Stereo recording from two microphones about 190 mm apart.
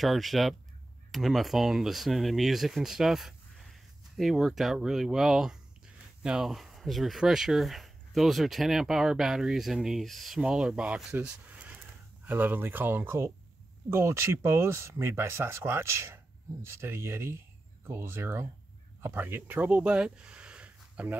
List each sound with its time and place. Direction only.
0.0 s speech: centre (ahead or behind)